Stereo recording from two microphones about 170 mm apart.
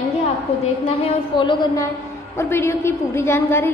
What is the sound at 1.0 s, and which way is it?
Speech, 30° left (ahead or behind).